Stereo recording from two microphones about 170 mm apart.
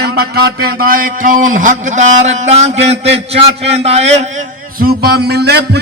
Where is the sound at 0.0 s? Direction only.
70° right (ahead or behind); by 4.1 s 40° right (ahead or behind).